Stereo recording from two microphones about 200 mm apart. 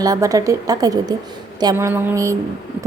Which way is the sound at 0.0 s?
15° right (ahead or behind).